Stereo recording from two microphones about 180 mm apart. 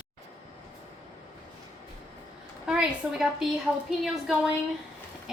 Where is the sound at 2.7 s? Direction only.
5° right (ahead or behind).